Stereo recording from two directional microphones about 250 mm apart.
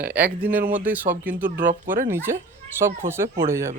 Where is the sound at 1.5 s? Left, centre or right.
Right.